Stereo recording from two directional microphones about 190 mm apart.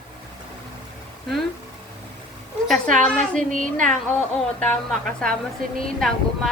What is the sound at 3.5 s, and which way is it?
Speech, 45° right (ahead or behind).